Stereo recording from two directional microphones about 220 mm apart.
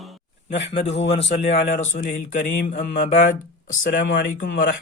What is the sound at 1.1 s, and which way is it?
A man's voice, 30° left (ahead or behind).